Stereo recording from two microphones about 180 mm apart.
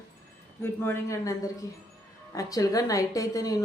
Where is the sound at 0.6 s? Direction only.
10° left (ahead or behind).